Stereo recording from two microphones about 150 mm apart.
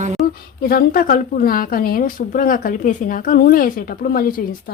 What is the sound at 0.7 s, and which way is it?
A woman's voice, 75° left (ahead or behind).